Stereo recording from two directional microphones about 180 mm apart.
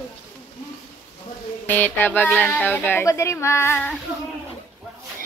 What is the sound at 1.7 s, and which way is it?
Speech, 10° left (ahead or behind).